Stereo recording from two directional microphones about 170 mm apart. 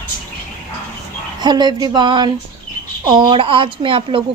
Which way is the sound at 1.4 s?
25° right (ahead or behind).